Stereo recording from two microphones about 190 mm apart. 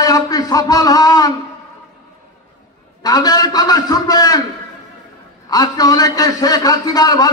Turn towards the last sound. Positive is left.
turn(degrees=20)  # may be behind; listen again after turning